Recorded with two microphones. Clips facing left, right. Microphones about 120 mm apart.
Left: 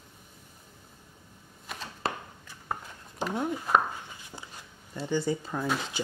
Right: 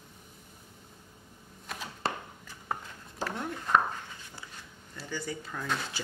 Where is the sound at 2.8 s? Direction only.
15° left (ahead or behind).